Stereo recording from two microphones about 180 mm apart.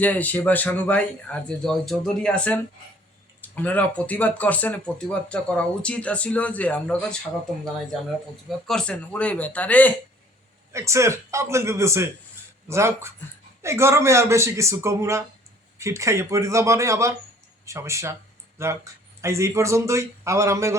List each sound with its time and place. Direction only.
0.0 s speech: 10° left (ahead or behind)
8.4 s speech: centre (ahead or behind)
10.7 s a man's voice: 15° right (ahead or behind)